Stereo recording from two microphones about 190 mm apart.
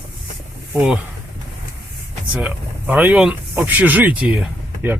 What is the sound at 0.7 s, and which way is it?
Speech, 5° right (ahead or behind).